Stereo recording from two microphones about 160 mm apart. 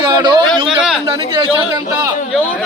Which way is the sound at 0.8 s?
5° right (ahead or behind).